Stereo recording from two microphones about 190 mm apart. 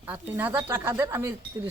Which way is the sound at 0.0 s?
10° right (ahead or behind).